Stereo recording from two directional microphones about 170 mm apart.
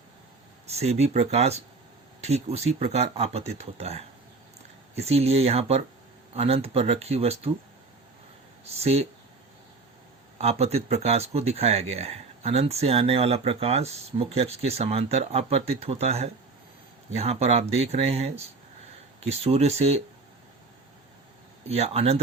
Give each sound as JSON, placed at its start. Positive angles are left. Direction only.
{"t": 0.7, "sound": "speech", "side_deg": -40}
{"t": 8.8, "sound": "speech", "side_deg": -40}
{"t": 10.3, "sound": "speech", "side_deg": -40}
{"t": 21.7, "sound": "speech", "side_deg": -35}